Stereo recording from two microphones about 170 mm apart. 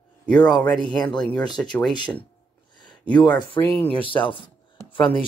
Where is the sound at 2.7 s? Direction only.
25° left (ahead or behind).